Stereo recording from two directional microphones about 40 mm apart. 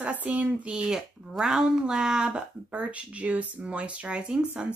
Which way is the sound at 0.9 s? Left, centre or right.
Centre.